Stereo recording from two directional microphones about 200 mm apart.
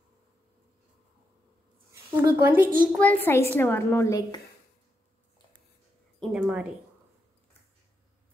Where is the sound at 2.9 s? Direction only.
5° left (ahead or behind).